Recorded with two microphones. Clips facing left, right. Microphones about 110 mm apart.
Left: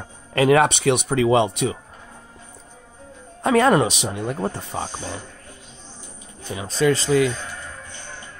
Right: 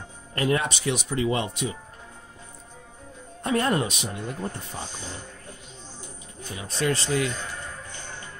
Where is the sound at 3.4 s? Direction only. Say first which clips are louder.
Left 8 dB; 90° left.